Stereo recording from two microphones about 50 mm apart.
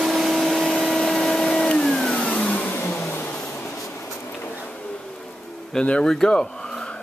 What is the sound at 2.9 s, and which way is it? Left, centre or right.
Vehicle, left.